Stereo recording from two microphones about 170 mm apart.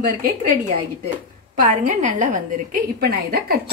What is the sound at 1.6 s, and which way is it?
A woman's voice, 45° right (ahead or behind).